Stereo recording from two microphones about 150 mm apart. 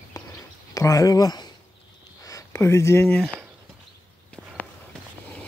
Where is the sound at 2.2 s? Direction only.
20° left (ahead or behind).